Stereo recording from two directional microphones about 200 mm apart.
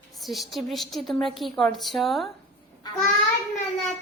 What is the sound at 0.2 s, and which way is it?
A woman's voice, centre (ahead or behind).